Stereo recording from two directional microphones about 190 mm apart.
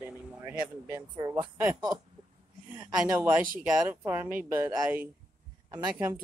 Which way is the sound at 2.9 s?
5° right (ahead or behind).